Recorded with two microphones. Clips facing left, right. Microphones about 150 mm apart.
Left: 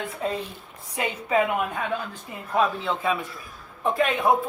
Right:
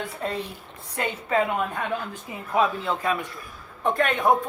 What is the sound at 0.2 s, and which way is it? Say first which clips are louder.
A woman's voice: left 2 dB; centre (ahead or behind).